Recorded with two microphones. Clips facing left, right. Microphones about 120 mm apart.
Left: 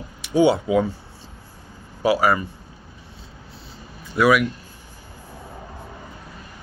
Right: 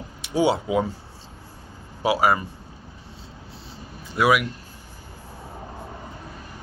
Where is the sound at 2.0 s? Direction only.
25° right (ahead or behind).